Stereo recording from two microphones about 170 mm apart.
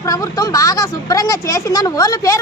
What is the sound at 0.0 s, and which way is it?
Speech, 20° left (ahead or behind).